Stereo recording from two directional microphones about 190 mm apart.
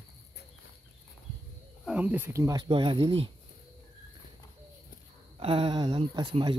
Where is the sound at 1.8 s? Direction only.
5° right (ahead or behind); by 3.3 s 25° right (ahead or behind).